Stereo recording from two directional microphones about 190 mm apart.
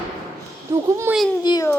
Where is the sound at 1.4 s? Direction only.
20° left (ahead or behind).